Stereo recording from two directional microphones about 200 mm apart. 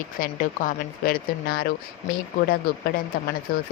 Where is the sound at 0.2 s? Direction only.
40° left (ahead or behind).